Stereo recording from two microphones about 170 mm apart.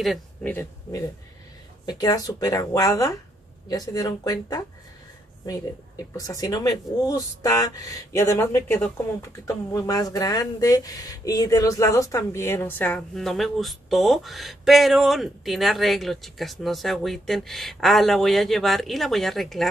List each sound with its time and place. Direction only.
0.0 s speech: centre (ahead or behind)
1.9 s speech: 25° left (ahead or behind); by 19.7 s centre (ahead or behind)